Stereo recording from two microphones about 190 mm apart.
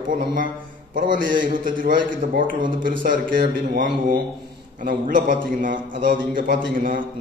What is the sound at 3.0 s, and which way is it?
A man's voice, 45° right (ahead or behind).